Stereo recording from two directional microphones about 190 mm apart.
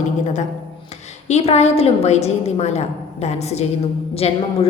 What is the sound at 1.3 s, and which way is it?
A woman's voice, 35° left (ahead or behind).